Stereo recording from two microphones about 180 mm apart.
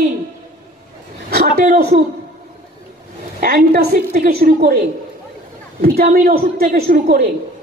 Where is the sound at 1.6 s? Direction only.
45° right (ahead or behind).